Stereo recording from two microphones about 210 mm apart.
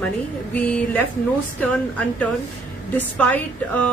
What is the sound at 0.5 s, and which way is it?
A woman's voice, 10° left (ahead or behind).